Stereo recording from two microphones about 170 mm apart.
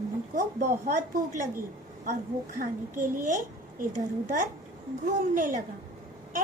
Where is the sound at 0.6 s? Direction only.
45° right (ahead or behind).